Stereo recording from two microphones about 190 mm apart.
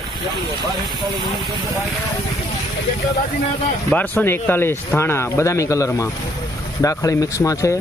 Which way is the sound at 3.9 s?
10° left (ahead or behind).